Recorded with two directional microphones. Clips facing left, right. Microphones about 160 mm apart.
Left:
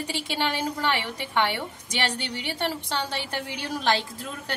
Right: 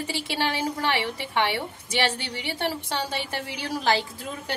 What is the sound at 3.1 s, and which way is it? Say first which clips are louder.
Speech: even; 5° right (ahead or behind).